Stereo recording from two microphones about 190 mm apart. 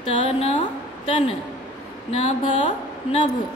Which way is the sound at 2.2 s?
35° left (ahead or behind).